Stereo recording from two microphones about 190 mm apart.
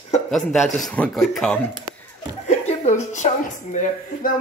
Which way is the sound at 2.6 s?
40° left (ahead or behind).